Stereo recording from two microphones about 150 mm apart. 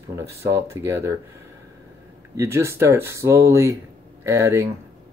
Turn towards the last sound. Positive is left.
turn(degrees=-20)  # may be behind; listen again after turning